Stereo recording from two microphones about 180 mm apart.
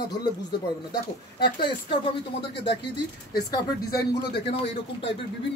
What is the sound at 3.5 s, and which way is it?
Speech, 20° left (ahead or behind).